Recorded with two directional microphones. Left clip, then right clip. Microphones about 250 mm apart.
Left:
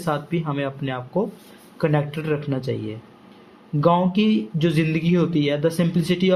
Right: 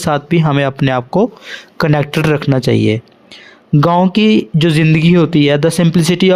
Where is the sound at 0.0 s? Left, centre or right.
Right.